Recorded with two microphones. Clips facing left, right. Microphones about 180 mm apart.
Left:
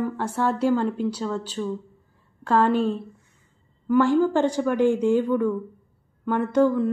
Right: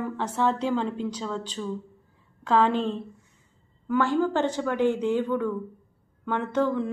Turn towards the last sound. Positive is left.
turn(degrees=10)  # may be behind; listen again after turning